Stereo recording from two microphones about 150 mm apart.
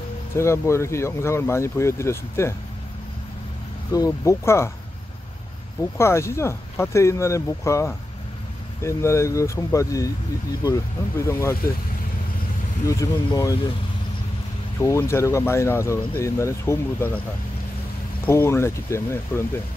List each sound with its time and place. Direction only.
0.4 s speech: 20° left (ahead or behind)
3.9 s speech: 20° left (ahead or behind)
5.9 s speech: 15° left (ahead or behind)
12.8 s speech: 20° left (ahead or behind)
14.8 s speech: 20° left (ahead or behind)
18.2 s speech: 15° left (ahead or behind)